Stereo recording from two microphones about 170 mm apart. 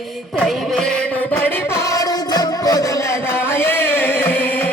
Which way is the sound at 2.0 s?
20° left (ahead or behind).